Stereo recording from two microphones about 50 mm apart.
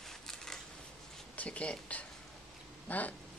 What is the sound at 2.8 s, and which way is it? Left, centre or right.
Speech, left.